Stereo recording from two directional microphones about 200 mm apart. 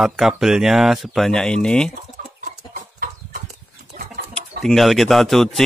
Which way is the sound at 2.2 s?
40° right (ahead or behind).